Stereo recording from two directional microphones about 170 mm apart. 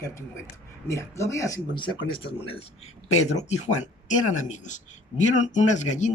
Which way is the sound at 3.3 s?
40° left (ahead or behind).